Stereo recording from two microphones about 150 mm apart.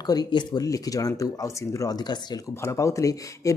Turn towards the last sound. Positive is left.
turn(degrees=20)  # may be behind; listen again after turning